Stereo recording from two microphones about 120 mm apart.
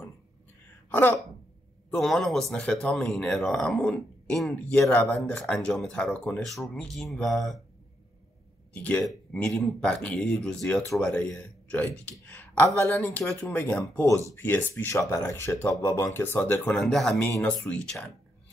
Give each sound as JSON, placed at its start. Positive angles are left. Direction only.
{"t": 0.8, "sound": "speech", "side_deg": 15}
{"t": 1.9, "sound": "speech", "side_deg": 5}
{"t": 8.7, "sound": "speech", "side_deg": 10}